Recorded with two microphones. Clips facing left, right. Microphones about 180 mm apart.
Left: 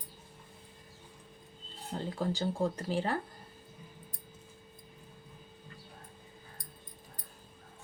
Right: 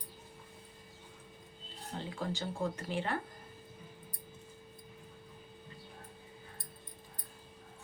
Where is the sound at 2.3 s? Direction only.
35° left (ahead or behind).